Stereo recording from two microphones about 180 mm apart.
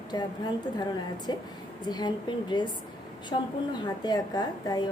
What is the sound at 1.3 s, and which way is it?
A woman's voice, 25° left (ahead or behind).